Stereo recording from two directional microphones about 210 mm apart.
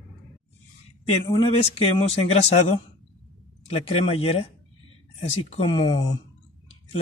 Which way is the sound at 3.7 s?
25° left (ahead or behind).